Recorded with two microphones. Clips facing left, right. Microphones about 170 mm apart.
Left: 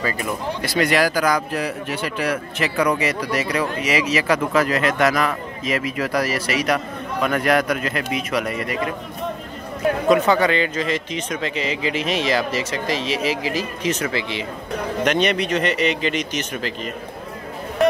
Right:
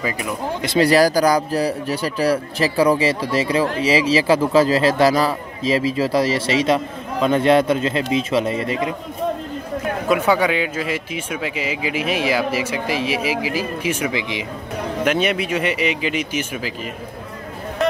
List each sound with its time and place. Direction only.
0.0 s speech: 15° right (ahead or behind)
0.7 s speech: 35° right (ahead or behind)
10.0 s speech: 10° right (ahead or behind)